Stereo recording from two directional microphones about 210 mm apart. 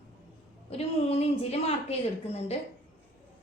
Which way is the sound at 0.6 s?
30° left (ahead or behind).